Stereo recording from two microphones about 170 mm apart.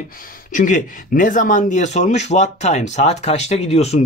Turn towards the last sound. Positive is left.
turn(degrees=40)  # may be behind; listen again after turning